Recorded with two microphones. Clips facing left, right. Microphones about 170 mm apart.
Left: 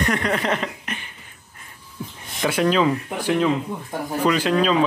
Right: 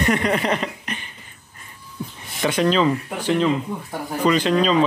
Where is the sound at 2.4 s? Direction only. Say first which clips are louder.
Right 1 dB; 5° left (ahead or behind).